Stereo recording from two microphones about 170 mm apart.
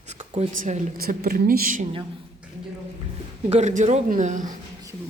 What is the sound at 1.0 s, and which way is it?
Speech, 65° right (ahead or behind).